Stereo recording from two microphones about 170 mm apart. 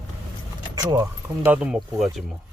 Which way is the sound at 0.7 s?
20° right (ahead or behind).